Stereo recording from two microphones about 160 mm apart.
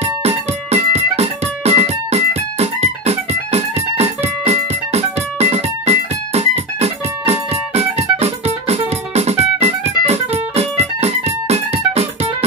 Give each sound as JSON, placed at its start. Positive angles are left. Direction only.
{"t": 0.0, "sound": "music", "side_deg": -40}